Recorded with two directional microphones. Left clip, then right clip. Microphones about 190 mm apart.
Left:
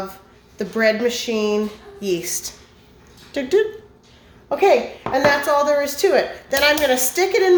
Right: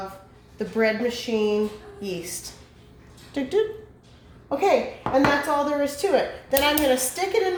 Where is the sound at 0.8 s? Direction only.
45° left (ahead or behind).